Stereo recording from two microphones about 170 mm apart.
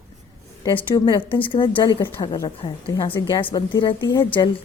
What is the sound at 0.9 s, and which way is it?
A woman's voice, 25° left (ahead or behind).